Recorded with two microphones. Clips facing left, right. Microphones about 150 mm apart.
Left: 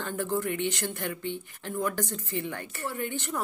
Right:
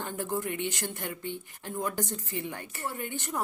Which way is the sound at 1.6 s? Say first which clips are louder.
Left 2 dB; 20° right (ahead or behind).